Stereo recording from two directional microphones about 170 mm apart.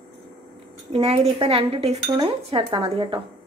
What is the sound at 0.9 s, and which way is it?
Speech, 35° right (ahead or behind).